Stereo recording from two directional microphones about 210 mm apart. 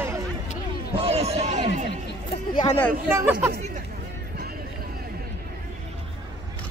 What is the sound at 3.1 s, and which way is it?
Speech, 10° right (ahead or behind).